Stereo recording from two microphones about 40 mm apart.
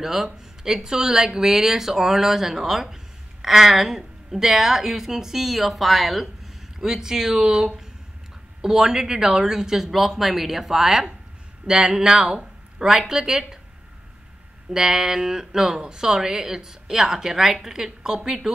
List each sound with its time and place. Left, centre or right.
0.0 s a woman's voice: centre
12.4 s a sound: right
13.0 s a woman's voice: centre
14.7 s a woman's voice: centre